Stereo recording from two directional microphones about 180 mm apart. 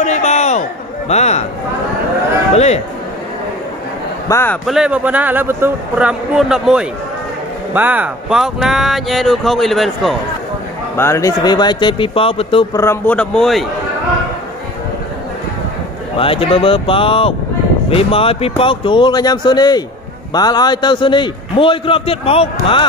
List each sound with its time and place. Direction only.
0.0 s a sound: 40° left (ahead or behind)
2.5 s speech: 35° left (ahead or behind)
4.3 s a man's voice: 15° left (ahead or behind)
4.6 s speech: 5° right (ahead or behind)
11.0 s a man's voice: 15° left (ahead or behind); by 12.6 s 30° left (ahead or behind)
12.7 s a man's voice: 15° left (ahead or behind)
16.2 s a man's voice: 30° left (ahead or behind)